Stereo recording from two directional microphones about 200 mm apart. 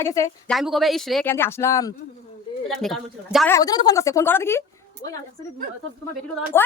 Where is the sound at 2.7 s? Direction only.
Centre (ahead or behind).